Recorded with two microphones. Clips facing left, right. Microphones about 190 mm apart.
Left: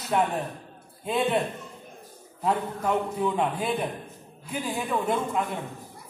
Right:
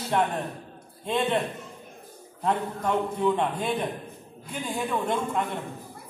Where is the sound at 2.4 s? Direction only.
5° left (ahead or behind).